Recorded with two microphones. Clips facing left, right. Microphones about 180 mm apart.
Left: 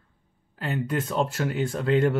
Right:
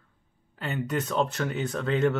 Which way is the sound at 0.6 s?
Centre (ahead or behind).